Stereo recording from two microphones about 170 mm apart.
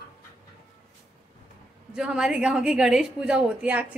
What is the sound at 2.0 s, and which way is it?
A woman's voice, 5° right (ahead or behind).